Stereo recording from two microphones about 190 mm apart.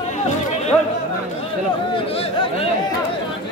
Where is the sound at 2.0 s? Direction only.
30° left (ahead or behind).